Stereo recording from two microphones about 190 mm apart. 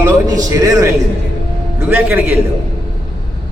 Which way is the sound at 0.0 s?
20° right (ahead or behind).